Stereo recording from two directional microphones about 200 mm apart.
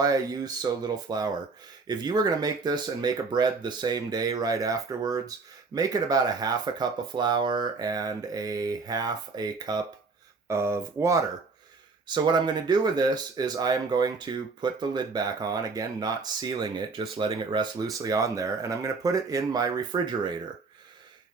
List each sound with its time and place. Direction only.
0.0 s speech: 20° right (ahead or behind)